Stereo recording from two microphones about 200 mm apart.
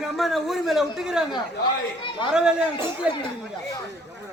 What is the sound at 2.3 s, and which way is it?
Speech, 5° right (ahead or behind).